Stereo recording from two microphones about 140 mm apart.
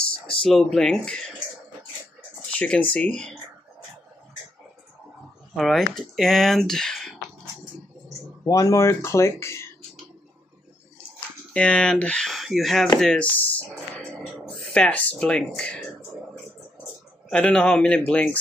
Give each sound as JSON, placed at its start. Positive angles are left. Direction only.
{"t": 0.3, "sound": "speech", "side_deg": 5}
{"t": 2.5, "sound": "speech", "side_deg": 5}
{"t": 5.6, "sound": "speech", "side_deg": 0}
{"t": 8.5, "sound": "speech", "side_deg": 25}
{"t": 11.5, "sound": "speech", "side_deg": 5}
{"t": 17.3, "sound": "speech", "side_deg": 5}